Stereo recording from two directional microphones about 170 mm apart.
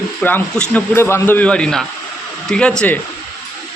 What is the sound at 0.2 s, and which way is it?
Speech, 10° left (ahead or behind).